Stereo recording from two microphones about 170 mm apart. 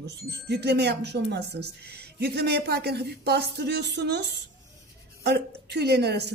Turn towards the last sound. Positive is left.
turn(degrees=-75)  # may be behind; listen again after turning